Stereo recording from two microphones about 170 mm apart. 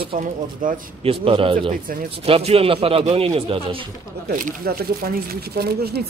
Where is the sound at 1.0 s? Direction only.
35° right (ahead or behind).